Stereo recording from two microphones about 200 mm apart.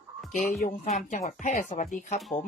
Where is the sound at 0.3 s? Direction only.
40° left (ahead or behind).